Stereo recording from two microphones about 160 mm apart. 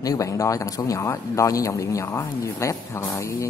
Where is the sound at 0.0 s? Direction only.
20° left (ahead or behind).